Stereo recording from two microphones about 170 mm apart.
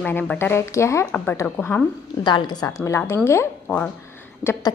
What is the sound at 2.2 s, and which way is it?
A woman's voice, 25° left (ahead or behind).